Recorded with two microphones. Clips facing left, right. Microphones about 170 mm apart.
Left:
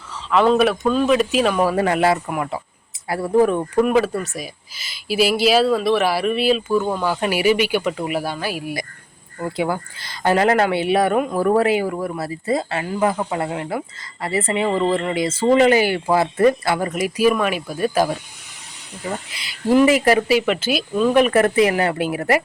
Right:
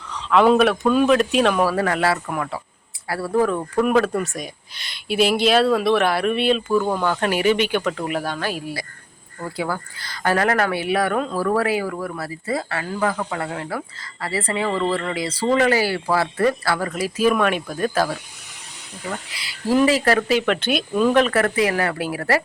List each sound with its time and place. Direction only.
0.1 s speech: centre (ahead or behind)
1.6 s speech: 20° left (ahead or behind)
3.8 s speech: 5° left (ahead or behind)
17.2 s speech: 5° left (ahead or behind)
19.3 s speech: 20° left (ahead or behind); by 21.1 s centre (ahead or behind)
21.1 s speech: 15° left (ahead or behind)